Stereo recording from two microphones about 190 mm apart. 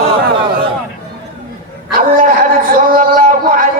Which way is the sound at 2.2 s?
50° right (ahead or behind).